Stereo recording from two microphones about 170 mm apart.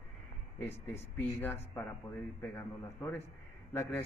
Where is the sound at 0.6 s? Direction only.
15° left (ahead or behind).